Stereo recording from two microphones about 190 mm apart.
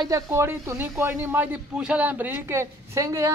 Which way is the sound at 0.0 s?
15° right (ahead or behind).